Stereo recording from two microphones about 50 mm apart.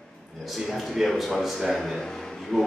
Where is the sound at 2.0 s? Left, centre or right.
Centre.